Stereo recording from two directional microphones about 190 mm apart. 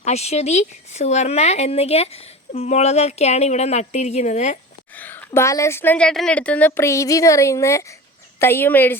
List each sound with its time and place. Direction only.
0.0 s speech: 35° left (ahead or behind)
4.9 s a woman's voice: 10° left (ahead or behind)